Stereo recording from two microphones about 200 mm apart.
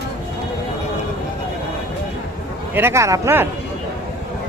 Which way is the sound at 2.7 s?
15° right (ahead or behind).